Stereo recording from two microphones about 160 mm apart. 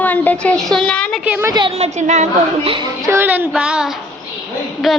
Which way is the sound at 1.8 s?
45° right (ahead or behind).